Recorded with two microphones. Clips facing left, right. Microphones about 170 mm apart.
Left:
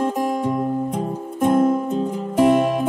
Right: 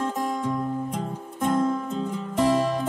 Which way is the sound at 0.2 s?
55° left (ahead or behind).